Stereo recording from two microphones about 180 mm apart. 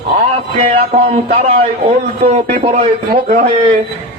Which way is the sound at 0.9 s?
40° right (ahead or behind).